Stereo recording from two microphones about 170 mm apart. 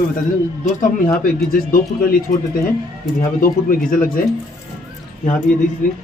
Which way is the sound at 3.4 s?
55° left (ahead or behind).